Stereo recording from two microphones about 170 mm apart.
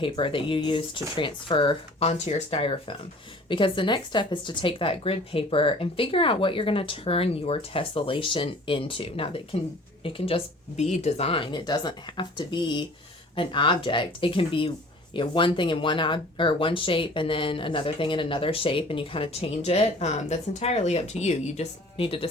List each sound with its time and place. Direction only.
0.0 s speech: 30° left (ahead or behind)